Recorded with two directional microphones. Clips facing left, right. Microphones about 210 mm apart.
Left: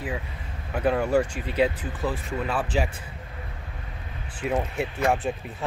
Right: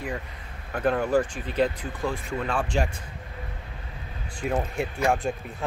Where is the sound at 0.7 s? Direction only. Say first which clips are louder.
Left 1 dB; 10° left (ahead or behind).